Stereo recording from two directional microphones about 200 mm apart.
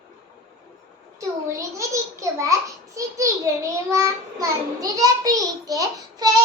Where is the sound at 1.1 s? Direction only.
15° right (ahead or behind).